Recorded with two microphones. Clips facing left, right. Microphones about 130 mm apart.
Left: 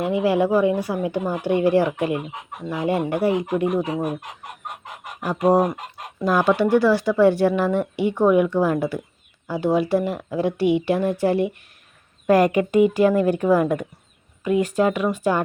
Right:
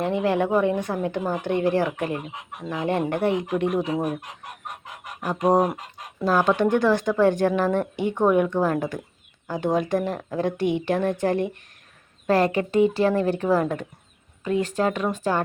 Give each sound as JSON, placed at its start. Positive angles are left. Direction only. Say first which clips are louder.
{"t": 0.0, "sound": "a woman's voice", "louder": "left 3 dB", "side_deg": 10}
{"t": 5.2, "sound": "a woman's voice", "louder": "left 2 dB", "side_deg": 10}